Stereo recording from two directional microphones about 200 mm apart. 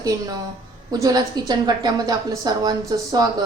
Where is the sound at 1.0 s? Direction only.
20° right (ahead or behind).